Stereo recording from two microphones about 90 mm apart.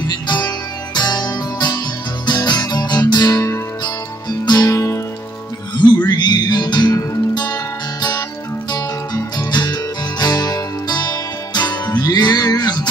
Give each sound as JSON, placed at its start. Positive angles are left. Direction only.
{"t": 0.1, "sound": "music", "side_deg": 50}
{"t": 3.8, "sound": "music", "side_deg": 50}
{"t": 6.0, "sound": "music", "side_deg": 50}
{"t": 8.7, "sound": "music", "side_deg": 45}